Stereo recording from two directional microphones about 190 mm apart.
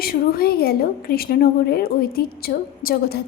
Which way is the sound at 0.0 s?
50° left (ahead or behind).